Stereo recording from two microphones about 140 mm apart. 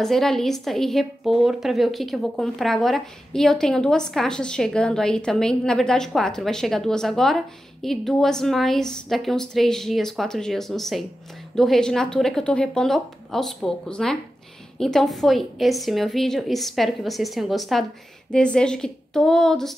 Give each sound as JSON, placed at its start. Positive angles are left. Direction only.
{"t": 0.0, "sound": "a woman's voice", "side_deg": 5}